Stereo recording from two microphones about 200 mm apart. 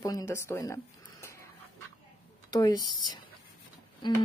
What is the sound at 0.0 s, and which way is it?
Speech, 15° left (ahead or behind).